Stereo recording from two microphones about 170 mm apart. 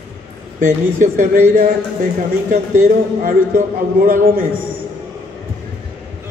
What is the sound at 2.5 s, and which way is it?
A man's voice, 45° right (ahead or behind).